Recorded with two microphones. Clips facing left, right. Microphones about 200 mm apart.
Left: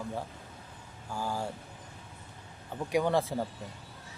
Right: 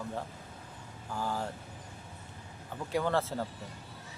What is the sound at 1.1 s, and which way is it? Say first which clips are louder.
Speech: even; 10° left (ahead or behind).